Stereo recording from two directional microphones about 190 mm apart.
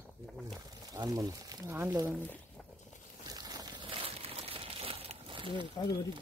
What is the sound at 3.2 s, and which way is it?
Crumpling, 20° right (ahead or behind).